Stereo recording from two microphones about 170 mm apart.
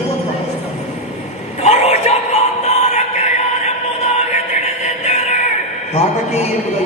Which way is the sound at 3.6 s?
40° left (ahead or behind).